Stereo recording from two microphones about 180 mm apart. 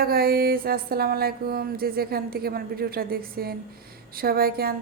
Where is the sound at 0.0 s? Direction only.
55° right (ahead or behind).